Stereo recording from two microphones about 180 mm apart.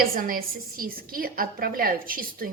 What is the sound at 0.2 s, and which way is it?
A woman's voice, 50° right (ahead or behind).